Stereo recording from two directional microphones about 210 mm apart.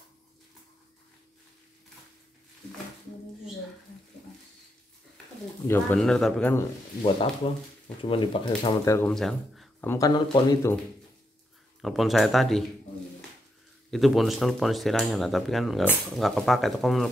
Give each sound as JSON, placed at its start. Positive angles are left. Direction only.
{"t": 5.7, "sound": "speech", "side_deg": 5}
{"t": 8.0, "sound": "speech", "side_deg": 25}
{"t": 8.9, "sound": "speech", "side_deg": 5}
{"t": 11.8, "sound": "speech", "side_deg": 0}
{"t": 13.8, "sound": "speech", "side_deg": 0}